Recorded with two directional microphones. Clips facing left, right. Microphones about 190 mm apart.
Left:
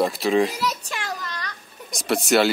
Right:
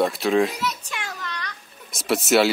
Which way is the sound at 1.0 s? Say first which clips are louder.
Left 2 dB; 35° left (ahead or behind).